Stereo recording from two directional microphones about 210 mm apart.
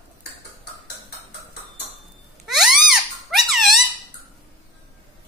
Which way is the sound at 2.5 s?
Centre (ahead or behind).